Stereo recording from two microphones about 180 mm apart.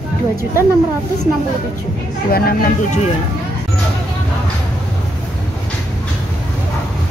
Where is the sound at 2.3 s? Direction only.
55° left (ahead or behind).